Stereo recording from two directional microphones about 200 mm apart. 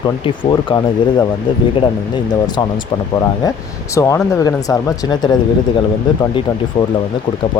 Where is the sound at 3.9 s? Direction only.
15° left (ahead or behind).